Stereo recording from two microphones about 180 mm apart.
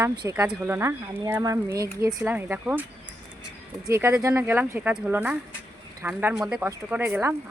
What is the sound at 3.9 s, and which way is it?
Speech, 15° right (ahead or behind).